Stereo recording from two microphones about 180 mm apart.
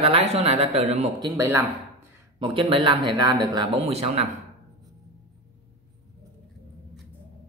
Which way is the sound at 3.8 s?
35° right (ahead or behind).